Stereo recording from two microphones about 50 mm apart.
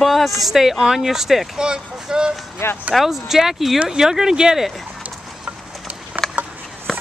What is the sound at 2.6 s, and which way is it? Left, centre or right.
Speech, left.